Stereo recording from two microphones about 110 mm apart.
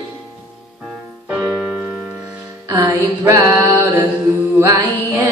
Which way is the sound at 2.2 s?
25° right (ahead or behind).